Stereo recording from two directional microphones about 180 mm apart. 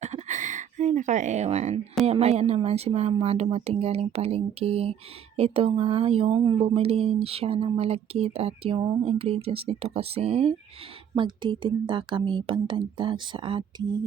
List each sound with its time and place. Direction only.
0.0 s speech: 40° right (ahead or behind)